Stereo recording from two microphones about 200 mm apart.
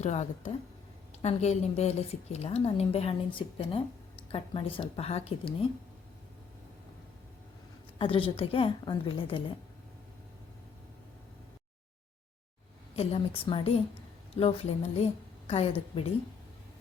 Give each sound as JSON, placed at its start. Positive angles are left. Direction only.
{"t": 0.0, "sound": "a woman's voice", "side_deg": 35}
{"t": 7.9, "sound": "a woman's voice", "side_deg": 25}
{"t": 13.0, "sound": "a woman's voice", "side_deg": 30}